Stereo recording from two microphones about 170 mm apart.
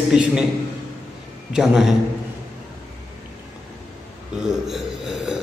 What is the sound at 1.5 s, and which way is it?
Speech, 5° right (ahead or behind).